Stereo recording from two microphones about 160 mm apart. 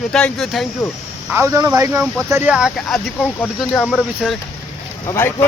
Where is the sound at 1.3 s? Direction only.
20° right (ahead or behind).